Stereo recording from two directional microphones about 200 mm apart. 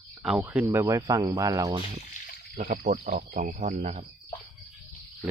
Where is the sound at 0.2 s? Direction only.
10° right (ahead or behind).